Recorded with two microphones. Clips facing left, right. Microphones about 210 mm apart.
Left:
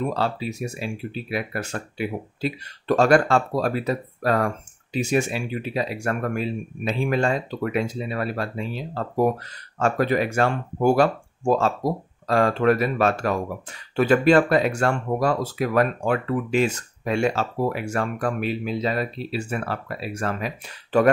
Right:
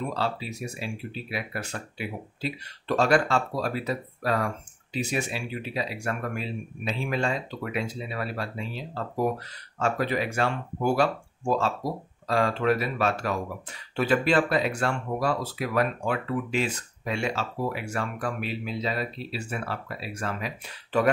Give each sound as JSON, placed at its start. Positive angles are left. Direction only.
{"t": 0.1, "sound": "speech", "side_deg": 45}